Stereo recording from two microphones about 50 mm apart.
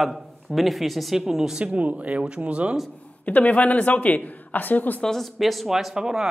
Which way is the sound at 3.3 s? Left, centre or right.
Left.